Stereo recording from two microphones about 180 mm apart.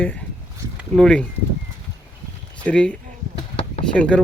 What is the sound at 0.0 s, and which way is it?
Speech, 10° left (ahead or behind).